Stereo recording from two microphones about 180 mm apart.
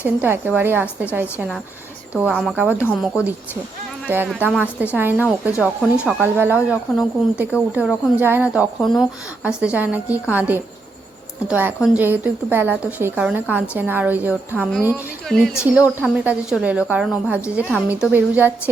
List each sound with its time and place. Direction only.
0.2 s speech: 10° right (ahead or behind)
2.3 s speech: 5° left (ahead or behind)
2.6 s speech: 10° right (ahead or behind)
15.3 s speech: centre (ahead or behind)